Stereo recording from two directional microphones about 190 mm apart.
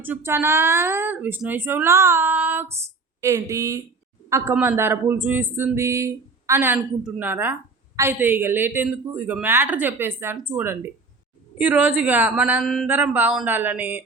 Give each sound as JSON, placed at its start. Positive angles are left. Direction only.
{"t": 0.0, "sound": "speech", "side_deg": -10}